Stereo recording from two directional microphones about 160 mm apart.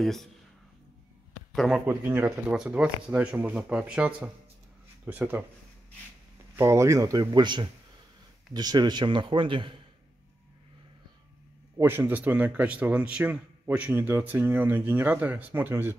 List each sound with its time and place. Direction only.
0.0 s speech: centre (ahead or behind)
1.5 s speech: centre (ahead or behind)
1.9 s a man's voice: 10° right (ahead or behind)
6.5 s speech: 15° right (ahead or behind)
11.8 s a man's voice: 15° right (ahead or behind)